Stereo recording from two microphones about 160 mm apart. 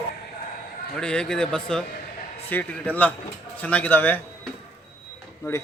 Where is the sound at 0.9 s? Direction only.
5° left (ahead or behind).